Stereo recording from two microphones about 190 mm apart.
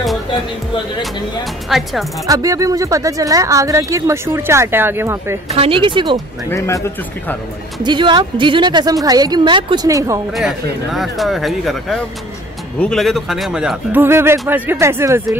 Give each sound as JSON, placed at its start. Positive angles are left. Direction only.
{"t": 1.7, "sound": "speech", "side_deg": 0}
{"t": 2.2, "sound": "speech", "side_deg": -20}
{"t": 5.5, "sound": "a woman's voice", "side_deg": -30}
{"t": 6.5, "sound": "speech", "side_deg": 15}
{"t": 7.8, "sound": "a woman's voice", "side_deg": -25}
{"t": 10.3, "sound": "speech", "side_deg": 0}